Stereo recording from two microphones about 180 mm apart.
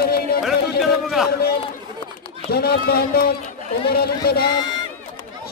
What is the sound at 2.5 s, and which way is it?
Speech, 60° left (ahead or behind).